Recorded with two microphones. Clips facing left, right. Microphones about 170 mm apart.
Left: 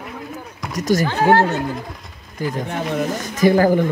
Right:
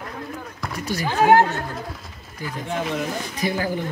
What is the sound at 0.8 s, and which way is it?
Speech, 45° left (ahead or behind).